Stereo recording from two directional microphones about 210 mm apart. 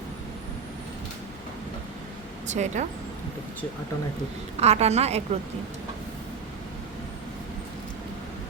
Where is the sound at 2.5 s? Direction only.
35° right (ahead or behind).